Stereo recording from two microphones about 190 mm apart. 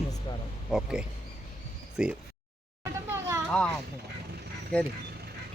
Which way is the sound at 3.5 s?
5° left (ahead or behind).